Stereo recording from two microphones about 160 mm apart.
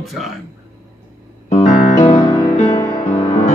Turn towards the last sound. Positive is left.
turn(degrees=50)  # may be behind; listen again after turning